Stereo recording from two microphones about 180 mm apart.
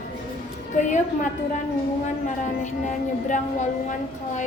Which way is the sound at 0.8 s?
40° left (ahead or behind).